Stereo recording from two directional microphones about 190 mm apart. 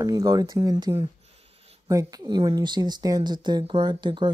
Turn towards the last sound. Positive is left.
turn(degrees=-25)  # may be behind; listen again after turning